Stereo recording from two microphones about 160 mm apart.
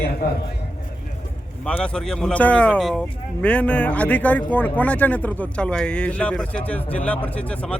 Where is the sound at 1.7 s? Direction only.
5° left (ahead or behind).